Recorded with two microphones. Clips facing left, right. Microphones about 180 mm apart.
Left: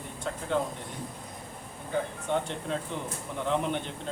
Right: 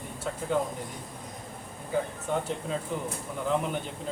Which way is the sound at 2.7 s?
5° right (ahead or behind).